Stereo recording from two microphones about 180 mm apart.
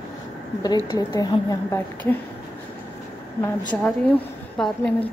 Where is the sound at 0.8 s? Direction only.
20° left (ahead or behind).